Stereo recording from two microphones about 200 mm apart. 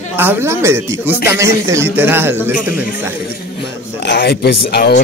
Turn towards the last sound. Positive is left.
turn(degrees=55)  # may be behind; listen again after turning